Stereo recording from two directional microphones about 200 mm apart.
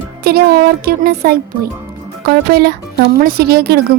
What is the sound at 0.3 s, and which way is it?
Speech, 50° right (ahead or behind).